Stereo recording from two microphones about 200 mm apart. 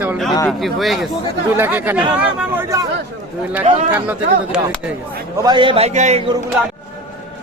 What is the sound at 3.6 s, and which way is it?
Speech, 35° right (ahead or behind).